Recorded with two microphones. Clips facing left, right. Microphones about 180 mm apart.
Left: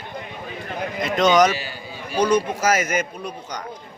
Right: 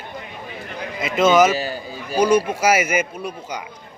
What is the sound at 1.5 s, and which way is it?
Speech, 40° right (ahead or behind).